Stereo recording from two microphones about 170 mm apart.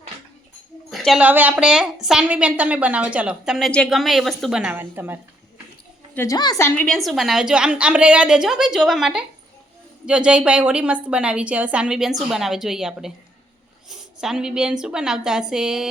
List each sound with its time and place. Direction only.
0.9 s a woman's voice: centre (ahead or behind)
6.1 s a woman's voice: 20° left (ahead or behind)
6.8 s a woman's voice: centre (ahead or behind)